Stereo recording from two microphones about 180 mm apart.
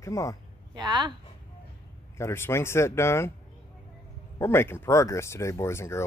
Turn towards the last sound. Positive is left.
turn(degrees=15)  # may be behind; listen again after turning